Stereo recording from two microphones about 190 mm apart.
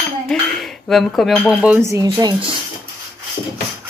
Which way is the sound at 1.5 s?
5° right (ahead or behind).